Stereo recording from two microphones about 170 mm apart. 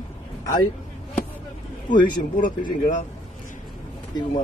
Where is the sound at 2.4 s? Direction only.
50° left (ahead or behind).